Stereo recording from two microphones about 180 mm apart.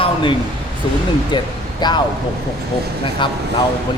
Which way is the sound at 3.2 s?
25° left (ahead or behind).